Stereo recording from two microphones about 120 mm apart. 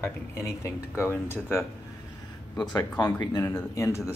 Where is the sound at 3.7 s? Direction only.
25° left (ahead or behind).